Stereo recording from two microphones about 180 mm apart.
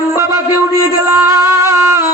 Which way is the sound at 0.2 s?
15° right (ahead or behind).